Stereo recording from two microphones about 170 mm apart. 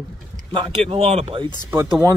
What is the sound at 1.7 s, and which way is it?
Speech, 15° right (ahead or behind).